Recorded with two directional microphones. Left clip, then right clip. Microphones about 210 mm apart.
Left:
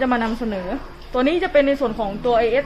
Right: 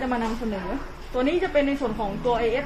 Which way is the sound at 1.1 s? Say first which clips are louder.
Left 5 dB; 50° left (ahead or behind).